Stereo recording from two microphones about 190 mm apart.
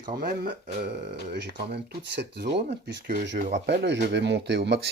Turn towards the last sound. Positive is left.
turn(degrees=-60)  # may be behind; listen again after turning